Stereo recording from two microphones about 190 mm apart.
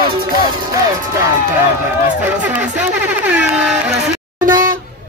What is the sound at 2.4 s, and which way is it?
Speech, 5° right (ahead or behind).